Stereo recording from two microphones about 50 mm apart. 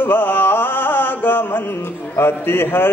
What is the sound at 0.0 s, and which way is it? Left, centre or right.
Carnatic music, left.